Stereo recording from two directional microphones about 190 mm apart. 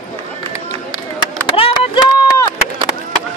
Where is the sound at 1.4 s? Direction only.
25° left (ahead or behind).